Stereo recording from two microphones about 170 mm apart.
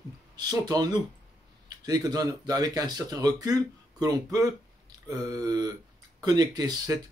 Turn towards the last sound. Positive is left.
turn(degrees=-25)  # may be behind; listen again after turning